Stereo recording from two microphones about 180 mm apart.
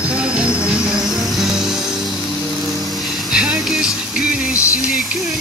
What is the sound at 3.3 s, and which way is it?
Music, 5° right (ahead or behind).